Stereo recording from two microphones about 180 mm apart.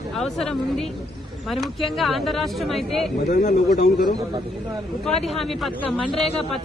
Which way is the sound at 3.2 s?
50° left (ahead or behind).